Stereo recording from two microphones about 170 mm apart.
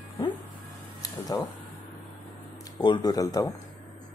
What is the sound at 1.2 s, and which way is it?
Speech, 20° left (ahead or behind).